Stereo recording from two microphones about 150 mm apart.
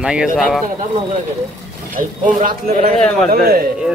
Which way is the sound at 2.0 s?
65° right (ahead or behind).